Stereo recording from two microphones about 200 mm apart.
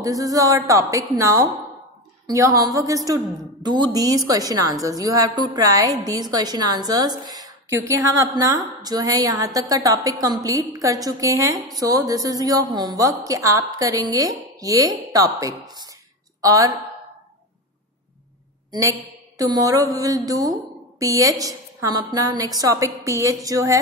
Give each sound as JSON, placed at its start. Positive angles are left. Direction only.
{"t": 0.0, "sound": "a woman's voice", "side_deg": -15}
{"t": 18.7, "sound": "a woman's voice", "side_deg": -15}